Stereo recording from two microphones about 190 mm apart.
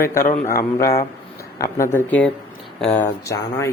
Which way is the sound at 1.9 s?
10° left (ahead or behind).